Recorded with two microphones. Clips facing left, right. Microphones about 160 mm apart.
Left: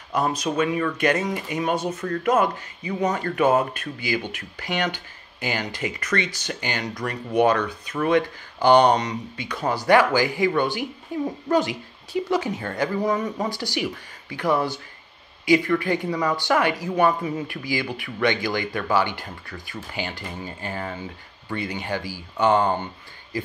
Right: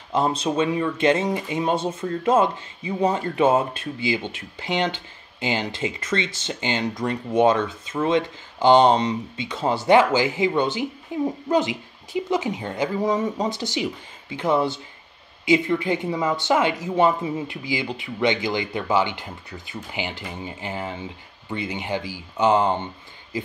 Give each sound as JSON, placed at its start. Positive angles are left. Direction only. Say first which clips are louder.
{"t": 0.1, "sound": "speech", "louder": "right 2 dB", "side_deg": -25}